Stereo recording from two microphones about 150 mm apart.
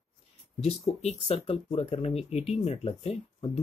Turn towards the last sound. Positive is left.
turn(degrees=40)  # may be behind; listen again after turning